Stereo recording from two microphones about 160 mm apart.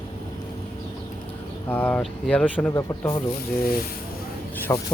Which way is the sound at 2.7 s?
20° left (ahead or behind).